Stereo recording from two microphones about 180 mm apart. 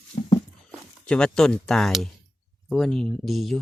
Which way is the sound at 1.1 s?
5° left (ahead or behind).